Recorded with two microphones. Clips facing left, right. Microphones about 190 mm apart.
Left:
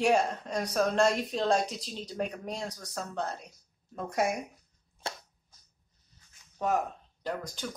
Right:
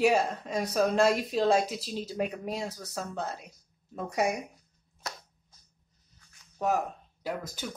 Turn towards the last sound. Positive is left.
turn(degrees=-5)  # may be behind; listen again after turning